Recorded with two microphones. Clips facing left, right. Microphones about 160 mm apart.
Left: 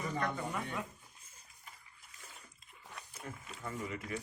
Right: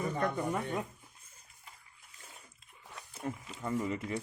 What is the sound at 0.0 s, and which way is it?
Speech, 50° right (ahead or behind).